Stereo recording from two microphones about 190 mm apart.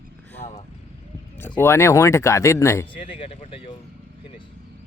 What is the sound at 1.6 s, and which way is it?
Speech, 15° left (ahead or behind).